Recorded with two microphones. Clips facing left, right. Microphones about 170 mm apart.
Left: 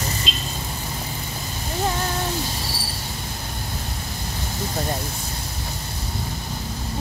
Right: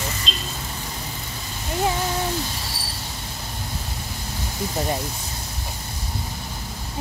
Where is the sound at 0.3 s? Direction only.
5° left (ahead or behind).